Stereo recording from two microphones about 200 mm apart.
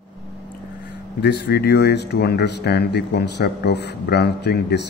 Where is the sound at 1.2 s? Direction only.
55° left (ahead or behind).